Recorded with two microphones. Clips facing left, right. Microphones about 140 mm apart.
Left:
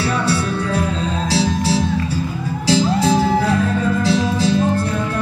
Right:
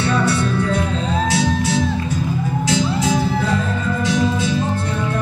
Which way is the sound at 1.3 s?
30° left (ahead or behind).